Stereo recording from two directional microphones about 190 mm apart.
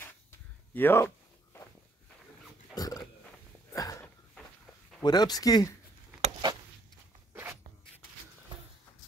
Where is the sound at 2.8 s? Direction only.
20° left (ahead or behind).